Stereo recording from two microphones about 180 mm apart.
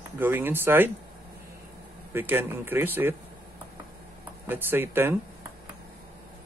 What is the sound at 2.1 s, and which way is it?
A man's voice, 10° right (ahead or behind).